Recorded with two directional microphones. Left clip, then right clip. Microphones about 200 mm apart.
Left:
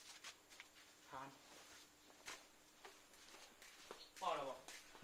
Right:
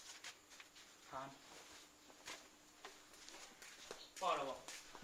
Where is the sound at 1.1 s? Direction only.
20° left (ahead or behind).